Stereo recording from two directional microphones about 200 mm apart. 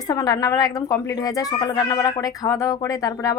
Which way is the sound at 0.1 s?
20° left (ahead or behind).